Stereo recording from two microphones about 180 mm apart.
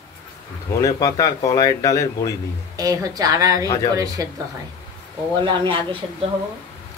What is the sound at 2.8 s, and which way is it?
Speech, 20° right (ahead or behind).